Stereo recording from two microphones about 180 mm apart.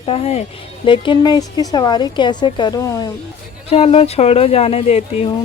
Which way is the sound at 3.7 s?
35° left (ahead or behind).